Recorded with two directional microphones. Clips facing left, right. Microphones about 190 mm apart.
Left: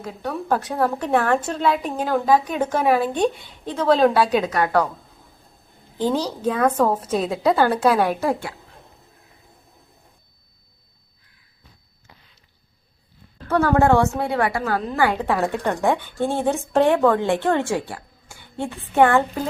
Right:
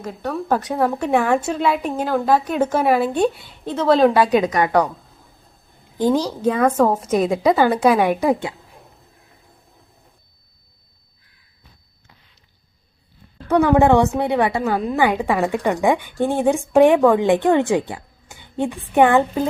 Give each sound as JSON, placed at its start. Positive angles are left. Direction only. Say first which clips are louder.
{"t": 0.0, "sound": "a woman's voice", "louder": "right 2 dB", "side_deg": 10}
{"t": 0.7, "sound": "speech", "louder": "right 2 dB", "side_deg": -10}
{"t": 6.0, "sound": "speech", "louder": "right 4 dB", "side_deg": -15}
{"t": 13.5, "sound": "a woman's voice", "louder": "right 3 dB", "side_deg": -15}